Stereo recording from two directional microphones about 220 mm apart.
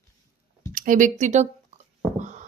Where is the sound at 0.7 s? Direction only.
35° right (ahead or behind).